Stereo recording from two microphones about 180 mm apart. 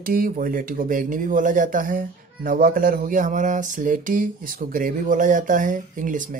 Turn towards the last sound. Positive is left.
turn(degrees=-45)  # may be behind; listen again after turning